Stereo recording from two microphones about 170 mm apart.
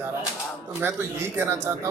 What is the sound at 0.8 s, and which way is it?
A man's voice, 10° right (ahead or behind).